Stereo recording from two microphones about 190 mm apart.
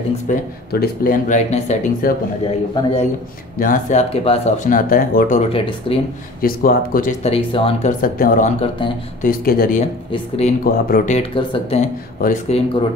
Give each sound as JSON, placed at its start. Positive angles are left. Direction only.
{"t": 0.3, "sound": "speech", "side_deg": 50}
{"t": 2.7, "sound": "speech", "side_deg": 30}
{"t": 3.5, "sound": "speech", "side_deg": 45}
{"t": 4.1, "sound": "speech", "side_deg": 30}
{"t": 4.6, "sound": "speech", "side_deg": 45}
{"t": 5.5, "sound": "speech", "side_deg": 30}
{"t": 6.4, "sound": "speech", "side_deg": 50}
{"t": 7.2, "sound": "speech", "side_deg": 30}
{"t": 8.0, "sound": "speech", "side_deg": 50}
{"t": 9.2, "sound": "speech", "side_deg": 50}
{"t": 10.1, "sound": "speech", "side_deg": 30}
{"t": 10.6, "sound": "speech", "side_deg": 45}
{"t": 12.2, "sound": "speech", "side_deg": 50}